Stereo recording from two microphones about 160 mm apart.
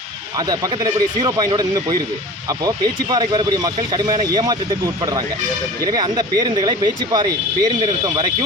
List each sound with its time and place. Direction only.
0.3 s speech: 25° right (ahead or behind)